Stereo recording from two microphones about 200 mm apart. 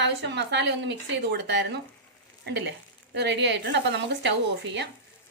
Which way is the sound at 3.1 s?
60° right (ahead or behind).